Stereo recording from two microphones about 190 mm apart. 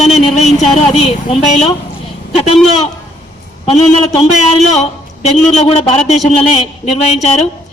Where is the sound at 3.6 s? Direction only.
30° left (ahead or behind).